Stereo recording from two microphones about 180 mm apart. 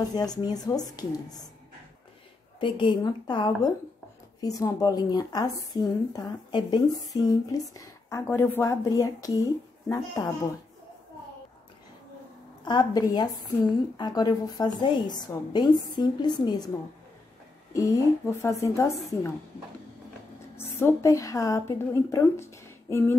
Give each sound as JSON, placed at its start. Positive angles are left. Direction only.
{"t": 0.1, "sound": "a woman's voice", "side_deg": 20}
{"t": 2.6, "sound": "a woman's voice", "side_deg": 25}
{"t": 12.6, "sound": "a woman's voice", "side_deg": 20}
{"t": 17.7, "sound": "a woman's voice", "side_deg": 15}
{"t": 20.5, "sound": "a woman's voice", "side_deg": 15}